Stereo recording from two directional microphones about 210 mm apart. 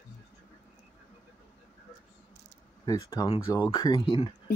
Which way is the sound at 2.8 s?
15° left (ahead or behind).